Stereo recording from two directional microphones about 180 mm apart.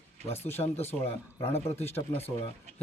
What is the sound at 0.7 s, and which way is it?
Speech, 35° left (ahead or behind).